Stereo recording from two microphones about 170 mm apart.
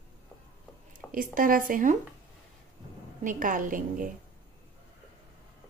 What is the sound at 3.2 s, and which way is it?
Speech, 50° right (ahead or behind).